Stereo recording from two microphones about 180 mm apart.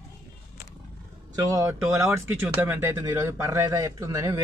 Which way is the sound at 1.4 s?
15° right (ahead or behind).